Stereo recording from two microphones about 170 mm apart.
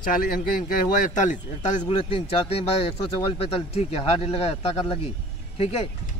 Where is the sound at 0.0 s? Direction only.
55° left (ahead or behind).